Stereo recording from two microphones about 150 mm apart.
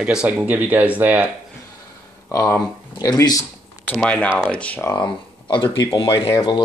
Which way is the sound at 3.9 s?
5° left (ahead or behind).